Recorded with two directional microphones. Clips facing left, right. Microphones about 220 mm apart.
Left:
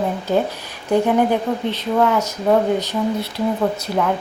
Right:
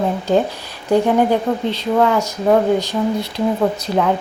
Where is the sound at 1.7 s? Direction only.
5° right (ahead or behind).